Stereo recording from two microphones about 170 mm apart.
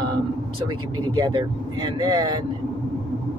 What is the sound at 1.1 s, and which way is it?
Speech, 25° right (ahead or behind).